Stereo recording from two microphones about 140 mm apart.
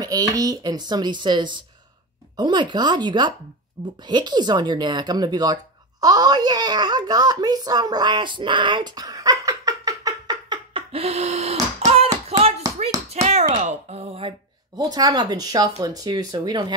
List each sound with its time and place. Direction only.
0.0 s speech: 25° right (ahead or behind)
10.9 s a sound: 45° right (ahead or behind)
13.1 s speech: 50° right (ahead or behind)
14.8 s speech: 25° right (ahead or behind)